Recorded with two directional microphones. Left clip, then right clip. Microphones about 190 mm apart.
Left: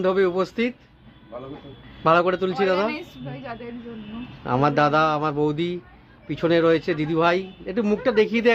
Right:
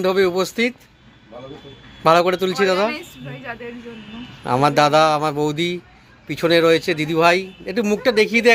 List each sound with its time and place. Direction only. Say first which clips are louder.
0.0 s speech: right 3 dB; 10° right (ahead or behind)
2.0 s speech: right 4 dB; 10° right (ahead or behind)
2.9 s a woman's voice: right 2 dB; 35° left (ahead or behind)
4.4 s speech: right 4 dB; 10° right (ahead or behind)